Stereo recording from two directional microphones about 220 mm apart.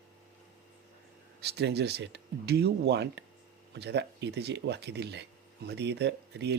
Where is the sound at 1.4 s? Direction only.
50° right (ahead or behind).